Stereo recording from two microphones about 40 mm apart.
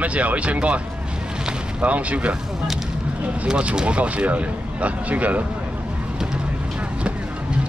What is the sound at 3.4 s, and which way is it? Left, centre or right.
Speech, right.